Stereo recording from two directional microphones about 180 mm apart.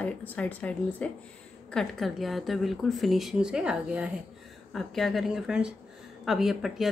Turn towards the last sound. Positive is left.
turn(degrees=0)  # may be behind; listen again after turning